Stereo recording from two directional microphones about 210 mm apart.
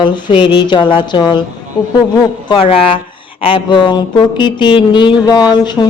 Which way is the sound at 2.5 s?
25° left (ahead or behind).